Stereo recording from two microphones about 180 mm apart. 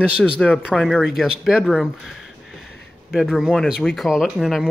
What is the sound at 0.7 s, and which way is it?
Speech, centre (ahead or behind).